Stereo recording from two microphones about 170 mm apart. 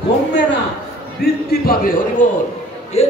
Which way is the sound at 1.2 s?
70° left (ahead or behind).